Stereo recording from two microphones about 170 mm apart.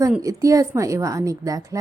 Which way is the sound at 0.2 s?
20° right (ahead or behind).